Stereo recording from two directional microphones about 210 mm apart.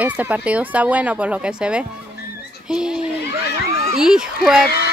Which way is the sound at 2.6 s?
5° right (ahead or behind).